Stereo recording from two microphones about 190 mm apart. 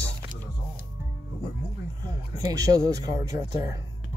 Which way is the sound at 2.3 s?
15° right (ahead or behind).